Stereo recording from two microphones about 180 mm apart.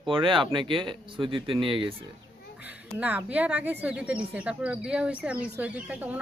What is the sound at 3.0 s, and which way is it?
Speech, 10° right (ahead or behind).